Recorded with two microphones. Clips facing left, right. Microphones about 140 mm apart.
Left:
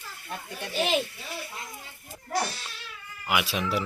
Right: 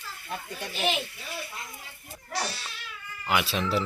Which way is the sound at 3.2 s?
10° left (ahead or behind).